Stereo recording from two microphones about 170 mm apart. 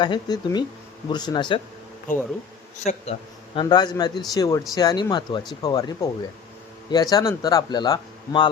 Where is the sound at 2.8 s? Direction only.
40° left (ahead or behind).